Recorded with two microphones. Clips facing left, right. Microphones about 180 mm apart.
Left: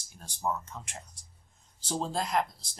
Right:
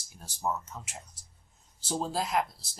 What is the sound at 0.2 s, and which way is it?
A man's voice, 5° right (ahead or behind).